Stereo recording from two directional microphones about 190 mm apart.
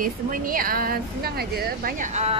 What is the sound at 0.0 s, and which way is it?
Speech, 50° right (ahead or behind).